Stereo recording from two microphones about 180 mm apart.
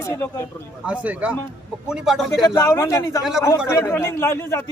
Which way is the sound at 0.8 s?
5° right (ahead or behind).